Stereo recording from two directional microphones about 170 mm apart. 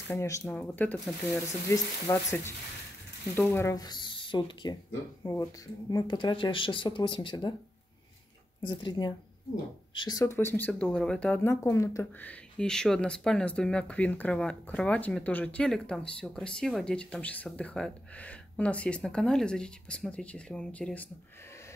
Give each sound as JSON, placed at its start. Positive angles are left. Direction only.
{"t": 0.1, "sound": "speech", "side_deg": 15}
{"t": 1.7, "sound": "speech", "side_deg": 15}
{"t": 5.2, "sound": "speech", "side_deg": 15}
{"t": 8.6, "sound": "speech", "side_deg": 25}